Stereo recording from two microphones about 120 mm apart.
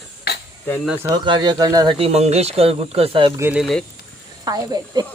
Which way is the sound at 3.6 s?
Centre (ahead or behind).